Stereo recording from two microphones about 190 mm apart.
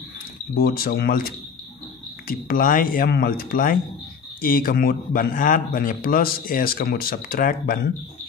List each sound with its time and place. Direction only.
0.6 s a man's voice: 50° left (ahead or behind)